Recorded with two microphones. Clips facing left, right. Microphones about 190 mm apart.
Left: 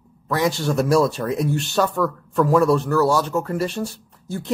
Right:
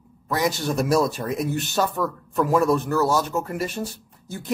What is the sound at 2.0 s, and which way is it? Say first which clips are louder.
Speech: left 4 dB; 20° right (ahead or behind).